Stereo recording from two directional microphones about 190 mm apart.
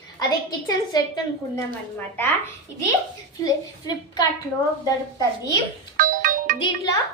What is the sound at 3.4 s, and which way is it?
Speech, 20° left (ahead or behind).